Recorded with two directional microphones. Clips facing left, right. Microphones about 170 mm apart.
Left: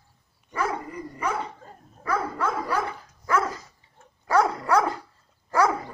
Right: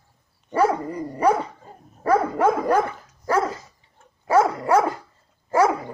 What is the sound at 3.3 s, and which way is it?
Dog, 30° right (ahead or behind).